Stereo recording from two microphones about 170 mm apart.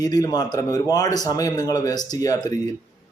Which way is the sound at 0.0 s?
20° left (ahead or behind).